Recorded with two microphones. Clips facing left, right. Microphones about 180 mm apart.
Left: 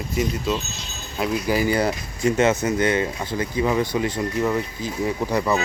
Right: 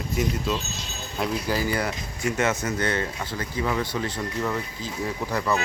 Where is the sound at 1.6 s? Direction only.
20° left (ahead or behind).